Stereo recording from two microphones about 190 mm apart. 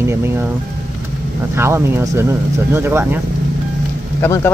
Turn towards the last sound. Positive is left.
turn(degrees=10)  # may be behind; listen again after turning